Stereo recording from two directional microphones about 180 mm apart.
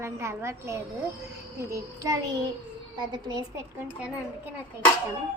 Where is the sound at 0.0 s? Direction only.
15° right (ahead or behind).